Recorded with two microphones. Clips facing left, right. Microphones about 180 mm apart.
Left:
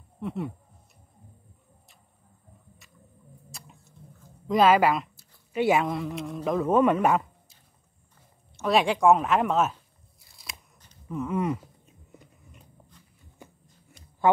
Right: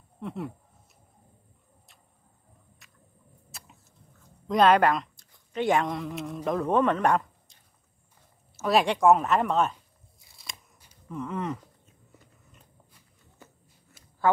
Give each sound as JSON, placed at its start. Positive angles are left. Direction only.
{"t": 0.2, "sound": "speech", "side_deg": 0}
{"t": 3.5, "sound": "chewing", "side_deg": 0}
{"t": 8.5, "sound": "speech", "side_deg": 0}
{"t": 10.3, "sound": "scissors", "side_deg": 0}
{"t": 11.1, "sound": "a sound", "side_deg": 5}
{"t": 13.4, "sound": "a sound", "side_deg": 15}
{"t": 14.3, "sound": "speech", "side_deg": 15}